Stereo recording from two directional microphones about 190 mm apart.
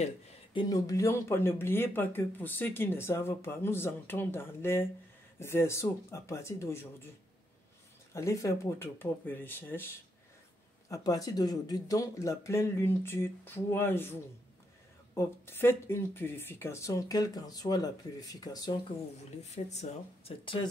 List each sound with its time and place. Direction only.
0.0 s speech: 25° left (ahead or behind)
8.1 s speech: 15° left (ahead or behind)
10.9 s speech: 20° left (ahead or behind)
15.1 s speech: 10° left (ahead or behind)
19.4 s speech: 35° left (ahead or behind)